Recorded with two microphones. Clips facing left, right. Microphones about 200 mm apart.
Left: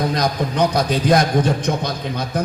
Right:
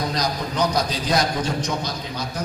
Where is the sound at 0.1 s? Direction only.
55° left (ahead or behind).